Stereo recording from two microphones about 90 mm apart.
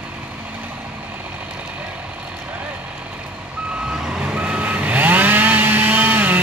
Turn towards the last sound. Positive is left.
turn(degrees=-20)  # may be behind; listen again after turning